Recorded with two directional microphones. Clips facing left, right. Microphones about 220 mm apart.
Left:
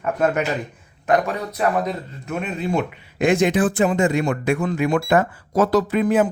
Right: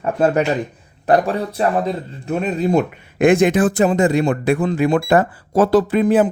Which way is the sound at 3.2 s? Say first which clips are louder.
Right 4 dB; 55° right (ahead or behind).